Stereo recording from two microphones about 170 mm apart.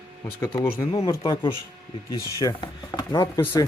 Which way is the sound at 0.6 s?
20° left (ahead or behind).